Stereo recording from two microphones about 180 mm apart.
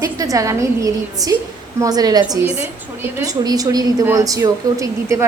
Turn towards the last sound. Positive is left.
turn(degrees=-15)  # may be behind; listen again after turning